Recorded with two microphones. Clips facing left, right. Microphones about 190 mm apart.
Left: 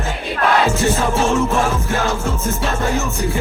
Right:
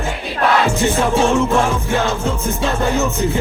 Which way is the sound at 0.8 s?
15° right (ahead or behind).